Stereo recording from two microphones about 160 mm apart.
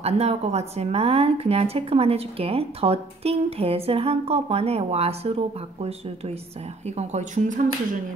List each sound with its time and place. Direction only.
0.0 s speech: 40° right (ahead or behind)